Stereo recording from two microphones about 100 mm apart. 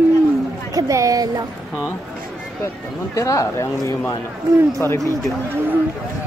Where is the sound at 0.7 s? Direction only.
35° right (ahead or behind).